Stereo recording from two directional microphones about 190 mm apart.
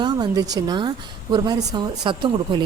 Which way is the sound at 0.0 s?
20° right (ahead or behind).